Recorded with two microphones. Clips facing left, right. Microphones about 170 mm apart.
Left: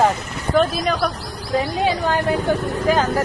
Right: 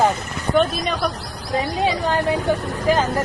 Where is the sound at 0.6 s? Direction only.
Centre (ahead or behind).